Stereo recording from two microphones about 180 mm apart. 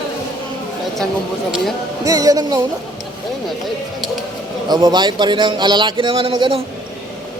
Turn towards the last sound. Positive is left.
turn(degrees=-30)  # may be behind; listen again after turning